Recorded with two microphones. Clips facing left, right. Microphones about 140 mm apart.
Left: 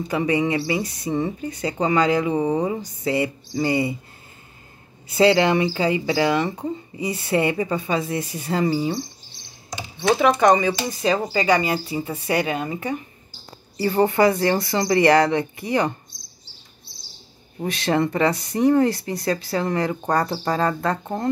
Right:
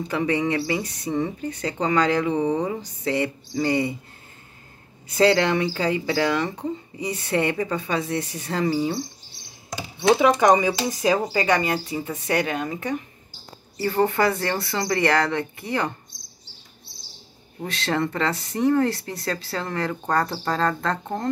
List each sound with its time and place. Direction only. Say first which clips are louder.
0.1 s speech: left 2 dB; 10° left (ahead or behind)
5.0 s speech: left 2 dB; 10° left (ahead or behind)
9.9 s speech: right 1 dB; 10° right (ahead or behind)
13.8 s speech: left 3 dB; 15° left (ahead or behind)
17.6 s speech: left 4 dB; 15° left (ahead or behind)